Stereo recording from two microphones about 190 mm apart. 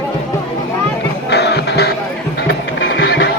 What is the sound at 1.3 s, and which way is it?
Music, 60° left (ahead or behind).